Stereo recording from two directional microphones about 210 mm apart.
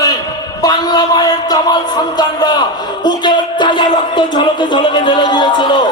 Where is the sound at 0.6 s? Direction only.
20° left (ahead or behind).